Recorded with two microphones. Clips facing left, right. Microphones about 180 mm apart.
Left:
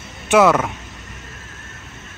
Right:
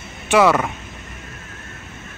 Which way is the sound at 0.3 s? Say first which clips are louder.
Left 1 dB; centre (ahead or behind).